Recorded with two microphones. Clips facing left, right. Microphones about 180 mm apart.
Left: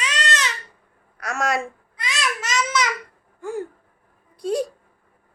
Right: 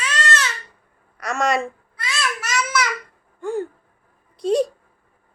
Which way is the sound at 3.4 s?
10° left (ahead or behind).